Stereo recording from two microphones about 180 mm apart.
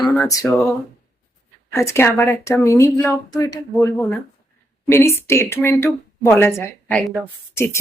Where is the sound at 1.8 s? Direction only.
15° left (ahead or behind).